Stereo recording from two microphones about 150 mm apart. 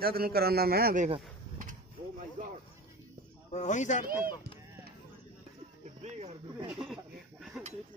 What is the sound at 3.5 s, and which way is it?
Speech, 50° left (ahead or behind).